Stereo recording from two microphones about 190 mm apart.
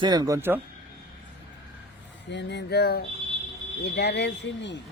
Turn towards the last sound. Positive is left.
turn(degrees=65)  # may be behind; listen again after turning